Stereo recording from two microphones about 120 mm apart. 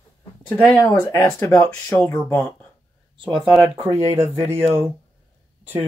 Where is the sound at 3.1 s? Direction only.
45° right (ahead or behind).